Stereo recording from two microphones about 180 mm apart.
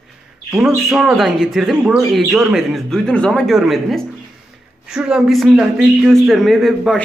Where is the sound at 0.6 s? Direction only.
15° right (ahead or behind).